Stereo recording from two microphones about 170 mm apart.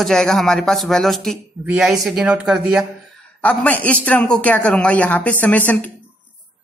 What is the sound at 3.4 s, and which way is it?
Speech, 10° left (ahead or behind).